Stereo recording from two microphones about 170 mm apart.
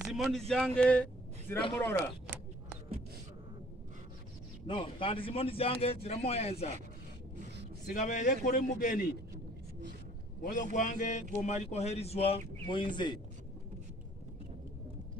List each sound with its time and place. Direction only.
0.0 s a sound: centre (ahead or behind)
0.5 s speech: 5° left (ahead or behind)
4.6 s speech: 30° left (ahead or behind)
7.9 s a man's voice: 50° left (ahead or behind)
10.4 s a man's voice: 50° left (ahead or behind); by 13.2 s 25° left (ahead or behind)